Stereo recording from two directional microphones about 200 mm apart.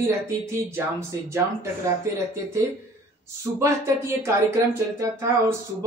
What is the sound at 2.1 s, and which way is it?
Speech, 15° right (ahead or behind).